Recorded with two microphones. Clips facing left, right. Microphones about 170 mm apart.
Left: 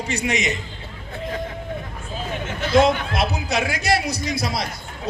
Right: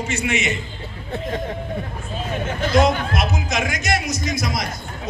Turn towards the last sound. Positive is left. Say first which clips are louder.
# right 1 dB
turn(degrees=30)  # may be behind; listen again after turning